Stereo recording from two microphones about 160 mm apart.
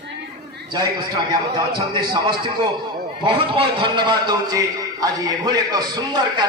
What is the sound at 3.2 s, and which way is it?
A man's voice, 35° right (ahead or behind).